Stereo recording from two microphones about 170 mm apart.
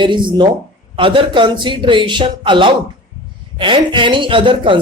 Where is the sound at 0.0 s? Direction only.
30° right (ahead or behind).